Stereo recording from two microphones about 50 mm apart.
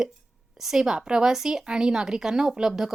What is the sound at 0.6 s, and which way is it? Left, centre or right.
A woman's voice, centre.